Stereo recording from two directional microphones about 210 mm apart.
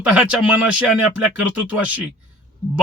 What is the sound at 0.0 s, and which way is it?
Speech, 5° right (ahead or behind).